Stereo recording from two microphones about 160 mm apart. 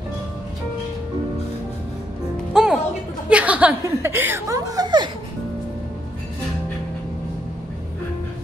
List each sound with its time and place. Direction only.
2.5 s music: 5° right (ahead or behind)
3.3 s speech: 10° right (ahead or behind); by 5.1 s 30° right (ahead or behind)